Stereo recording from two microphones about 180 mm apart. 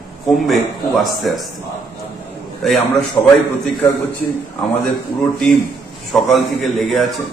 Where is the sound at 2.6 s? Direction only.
Centre (ahead or behind).